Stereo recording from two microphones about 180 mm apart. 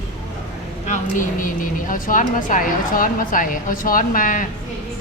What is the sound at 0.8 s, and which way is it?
A woman's voice, 45° left (ahead or behind).